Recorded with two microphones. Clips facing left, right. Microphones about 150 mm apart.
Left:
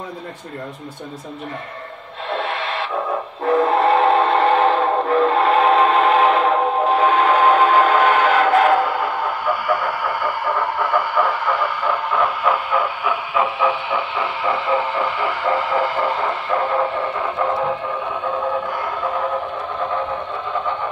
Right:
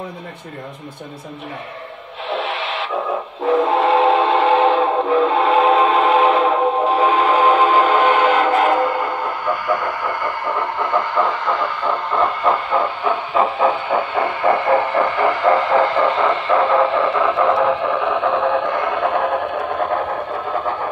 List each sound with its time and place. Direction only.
2.2 s radio: centre (ahead or behind)
3.4 s a sound: centre (ahead or behind)
7.3 s music: 5° right (ahead or behind)
9.7 s a sound: 10° left (ahead or behind)
10.8 s heart murmur: 10° left (ahead or behind)
13.3 s heart murmur: 40° right (ahead or behind); by 19.3 s 70° right (ahead or behind)